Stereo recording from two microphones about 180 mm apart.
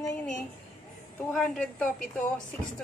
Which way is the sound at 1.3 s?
5° left (ahead or behind).